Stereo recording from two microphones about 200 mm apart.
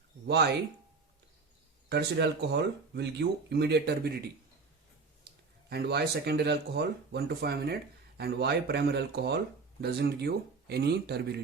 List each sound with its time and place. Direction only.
0.3 s speech: 55° right (ahead or behind)
1.9 s speech: 55° right (ahead or behind)